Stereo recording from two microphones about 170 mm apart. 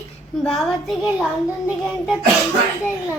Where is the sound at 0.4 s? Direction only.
Centre (ahead or behind).